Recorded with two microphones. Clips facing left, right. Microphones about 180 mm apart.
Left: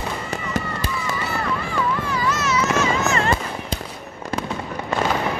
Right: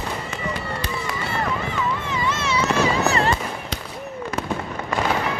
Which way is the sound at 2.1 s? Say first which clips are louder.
Left 2 dB; 25° right (ahead or behind).